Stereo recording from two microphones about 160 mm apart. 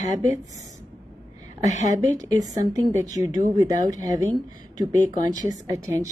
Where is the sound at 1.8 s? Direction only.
20° right (ahead or behind).